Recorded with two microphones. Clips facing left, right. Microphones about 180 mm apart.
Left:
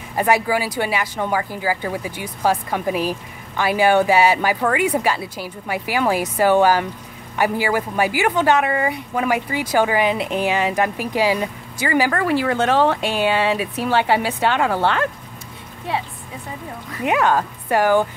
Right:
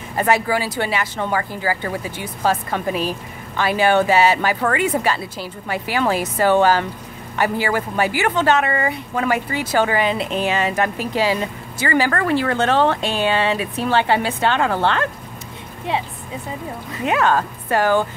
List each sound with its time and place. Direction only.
0.1 s a woman's voice: 10° left (ahead or behind)
15.9 s a woman's voice: 20° right (ahead or behind)
17.0 s a woman's voice: 15° left (ahead or behind)